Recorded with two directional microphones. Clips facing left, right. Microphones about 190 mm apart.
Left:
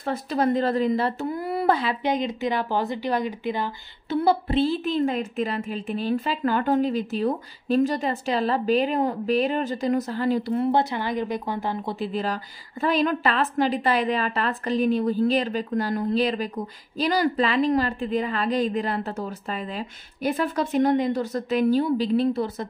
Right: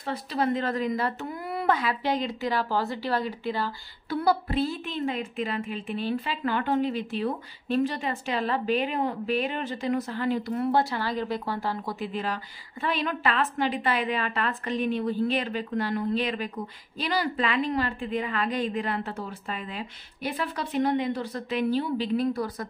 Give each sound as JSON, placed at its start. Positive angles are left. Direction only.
{"t": 0.0, "sound": "a woman's voice", "side_deg": 45}
{"t": 2.0, "sound": "speech", "side_deg": 20}